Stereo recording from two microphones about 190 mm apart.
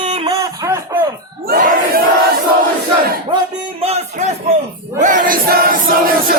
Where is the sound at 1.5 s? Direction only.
45° right (ahead or behind).